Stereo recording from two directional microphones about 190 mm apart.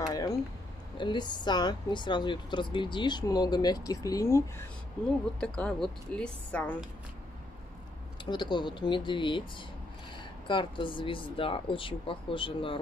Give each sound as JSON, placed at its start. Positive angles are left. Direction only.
{"t": 0.1, "sound": "a sound", "side_deg": 20}
{"t": 0.9, "sound": "speech", "side_deg": 25}
{"t": 8.3, "sound": "speech", "side_deg": 25}